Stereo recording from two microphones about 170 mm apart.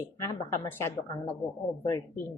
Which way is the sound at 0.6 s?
15° left (ahead or behind).